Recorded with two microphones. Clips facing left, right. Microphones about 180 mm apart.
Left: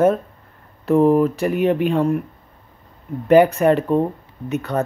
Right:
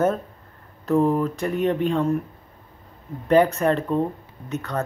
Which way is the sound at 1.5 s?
75° left (ahead or behind).